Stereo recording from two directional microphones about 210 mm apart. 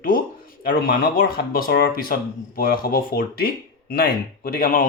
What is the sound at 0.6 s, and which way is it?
Speech, 40° left (ahead or behind).